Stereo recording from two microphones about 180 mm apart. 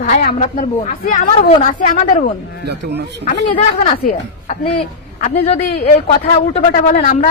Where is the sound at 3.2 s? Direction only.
40° left (ahead or behind).